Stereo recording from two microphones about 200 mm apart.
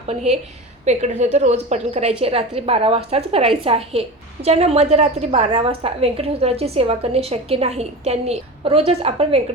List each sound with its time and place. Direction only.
0.1 s a woman's voice: 30° right (ahead or behind)